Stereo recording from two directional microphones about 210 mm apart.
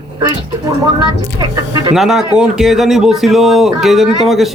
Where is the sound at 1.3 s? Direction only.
20° right (ahead or behind).